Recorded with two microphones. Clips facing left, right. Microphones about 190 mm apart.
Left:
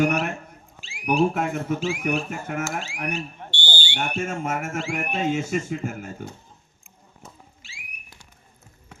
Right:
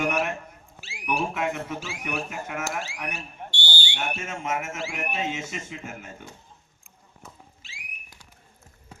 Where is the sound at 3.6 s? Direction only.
45° left (ahead or behind).